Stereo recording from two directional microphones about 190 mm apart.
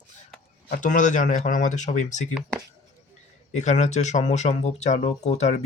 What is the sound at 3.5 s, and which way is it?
Speech, 40° left (ahead or behind).